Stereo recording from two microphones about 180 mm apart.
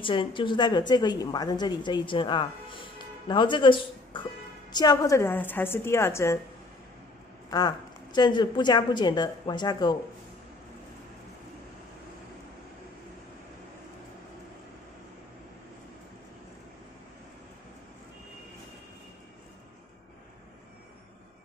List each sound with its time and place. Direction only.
0.0 s a woman's voice: 30° left (ahead or behind)
7.4 s a woman's voice: 20° left (ahead or behind)